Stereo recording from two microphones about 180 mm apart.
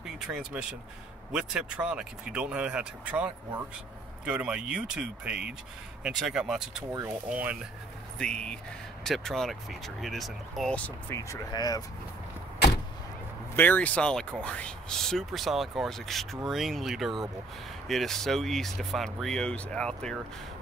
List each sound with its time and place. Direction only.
0.0 s a sound: 5° right (ahead or behind)
1.3 s speech: 5° right (ahead or behind)
8.2 s speech: 5° left (ahead or behind)
11.1 s speech: 20° left (ahead or behind)
13.6 s speech: 10° left (ahead or behind)